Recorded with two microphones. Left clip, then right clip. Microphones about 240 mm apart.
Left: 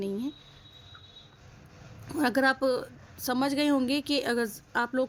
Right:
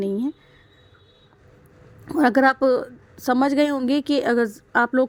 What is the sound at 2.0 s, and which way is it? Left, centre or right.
A woman's voice, right.